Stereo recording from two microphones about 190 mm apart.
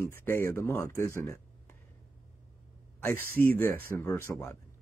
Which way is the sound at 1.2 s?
15° left (ahead or behind).